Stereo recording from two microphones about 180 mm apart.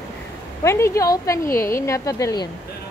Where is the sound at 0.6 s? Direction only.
15° left (ahead or behind).